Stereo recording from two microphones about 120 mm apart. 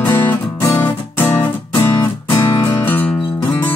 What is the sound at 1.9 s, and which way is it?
Music, 35° left (ahead or behind).